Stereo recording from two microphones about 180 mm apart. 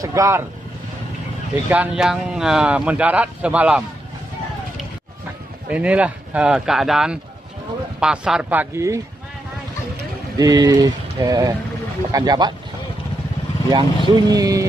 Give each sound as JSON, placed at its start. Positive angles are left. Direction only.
{"t": 0.0, "sound": "speech", "side_deg": -15}
{"t": 1.7, "sound": "speech", "side_deg": -5}
{"t": 5.7, "sound": "speech", "side_deg": -5}
{"t": 10.3, "sound": "speech", "side_deg": -20}
{"t": 13.7, "sound": "speech", "side_deg": -25}